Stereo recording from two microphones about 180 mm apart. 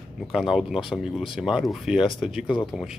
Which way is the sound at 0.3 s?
5° right (ahead or behind).